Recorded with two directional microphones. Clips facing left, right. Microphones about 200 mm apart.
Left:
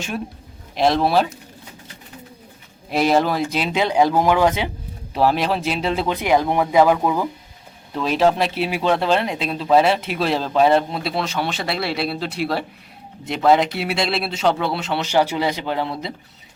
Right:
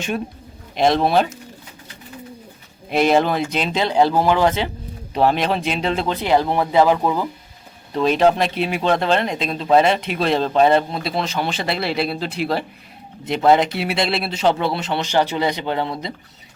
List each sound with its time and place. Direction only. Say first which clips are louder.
0.8 s speech: right 1 dB; centre (ahead or behind)
2.9 s speech: right 1 dB; centre (ahead or behind)